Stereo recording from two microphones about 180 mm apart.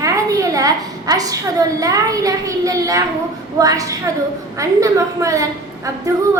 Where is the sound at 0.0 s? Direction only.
15° right (ahead or behind).